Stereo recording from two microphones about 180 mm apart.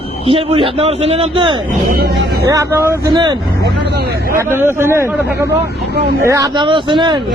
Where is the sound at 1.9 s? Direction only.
60° right (ahead or behind).